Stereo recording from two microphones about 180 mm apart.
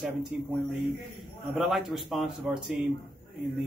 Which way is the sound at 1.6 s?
Centre (ahead or behind).